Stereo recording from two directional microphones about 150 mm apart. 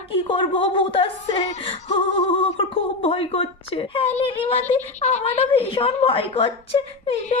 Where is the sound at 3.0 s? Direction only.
40° left (ahead or behind).